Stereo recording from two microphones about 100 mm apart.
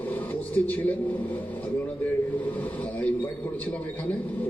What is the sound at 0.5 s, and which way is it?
Speech, 15° left (ahead or behind).